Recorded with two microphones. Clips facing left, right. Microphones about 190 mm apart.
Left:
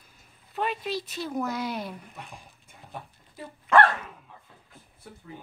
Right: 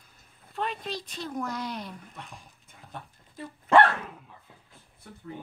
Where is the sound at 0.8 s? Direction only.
5° left (ahead or behind).